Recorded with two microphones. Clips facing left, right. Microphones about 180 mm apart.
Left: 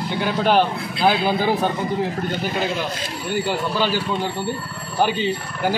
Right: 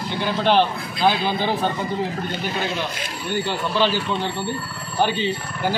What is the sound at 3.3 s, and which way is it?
Speech, 5° left (ahead or behind).